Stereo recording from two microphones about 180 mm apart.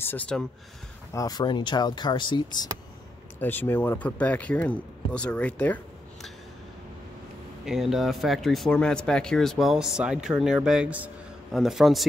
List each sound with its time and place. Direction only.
0.0 s speech: 10° left (ahead or behind)
1.1 s speech: 20° left (ahead or behind)
3.3 s speech: 10° left (ahead or behind)
7.6 s speech: centre (ahead or behind)